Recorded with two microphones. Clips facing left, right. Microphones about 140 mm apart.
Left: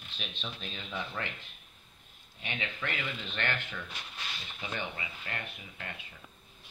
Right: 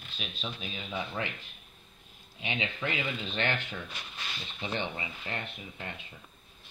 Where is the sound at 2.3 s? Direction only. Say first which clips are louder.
Right 4 dB; 15° right (ahead or behind).